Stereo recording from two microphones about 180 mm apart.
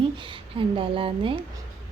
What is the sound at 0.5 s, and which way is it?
Speech, 30° right (ahead or behind).